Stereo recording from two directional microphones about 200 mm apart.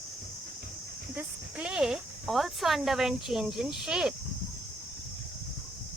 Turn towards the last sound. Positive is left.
turn(degrees=-5)  # may be behind; listen again after turning